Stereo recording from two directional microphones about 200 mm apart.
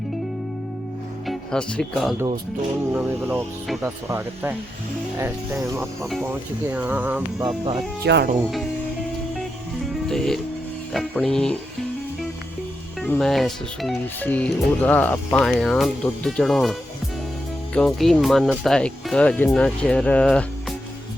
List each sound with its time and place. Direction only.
1.3 s speech: 5° left (ahead or behind)
2.9 s speech: 10° right (ahead or behind)
7.4 s speech: 25° right (ahead or behind)
8.0 s speech: 55° right (ahead or behind)
10.1 s speech: centre (ahead or behind)
13.0 s speech: centre (ahead or behind)
17.7 s speech: centre (ahead or behind)